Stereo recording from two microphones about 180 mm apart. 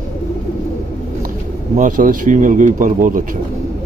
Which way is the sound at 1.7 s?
50° right (ahead or behind).